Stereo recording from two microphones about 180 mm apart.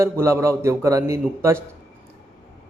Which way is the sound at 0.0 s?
15° right (ahead or behind).